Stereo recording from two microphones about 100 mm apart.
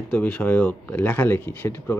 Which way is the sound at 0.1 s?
15° left (ahead or behind).